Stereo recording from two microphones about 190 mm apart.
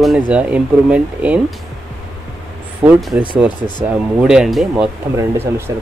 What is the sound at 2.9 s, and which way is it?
Speech, centre (ahead or behind).